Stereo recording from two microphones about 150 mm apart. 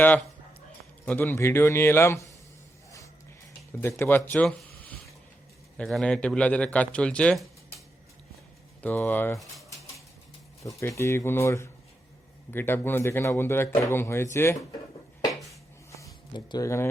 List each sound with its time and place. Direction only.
1.0 s speech: 15° left (ahead or behind)
3.8 s speech: 15° left (ahead or behind)
8.8 s speech: 10° left (ahead or behind)
10.6 s speech: 20° left (ahead or behind)
15.3 s a sound: centre (ahead or behind)
16.3 s speech: 25° left (ahead or behind)